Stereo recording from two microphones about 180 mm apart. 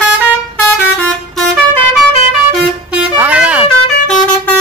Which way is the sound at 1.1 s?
5° left (ahead or behind).